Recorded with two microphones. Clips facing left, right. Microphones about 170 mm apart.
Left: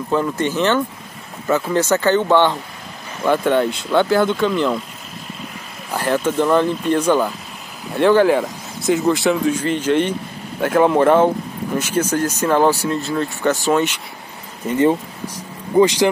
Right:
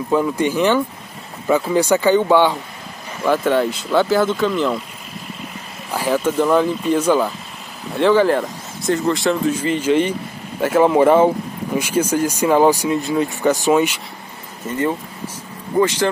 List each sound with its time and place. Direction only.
0.1 s speech: 10° right (ahead or behind)
5.9 s speech: 5° right (ahead or behind)
14.7 s speech: 20° left (ahead or behind)